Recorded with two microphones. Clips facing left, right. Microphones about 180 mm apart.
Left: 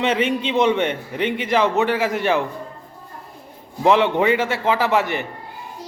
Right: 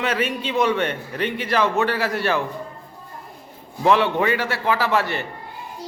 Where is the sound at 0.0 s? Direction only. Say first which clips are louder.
Left 4 dB; 25° left (ahead or behind).